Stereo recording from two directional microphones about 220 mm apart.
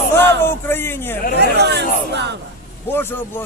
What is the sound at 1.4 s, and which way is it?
Speech, 50° right (ahead or behind).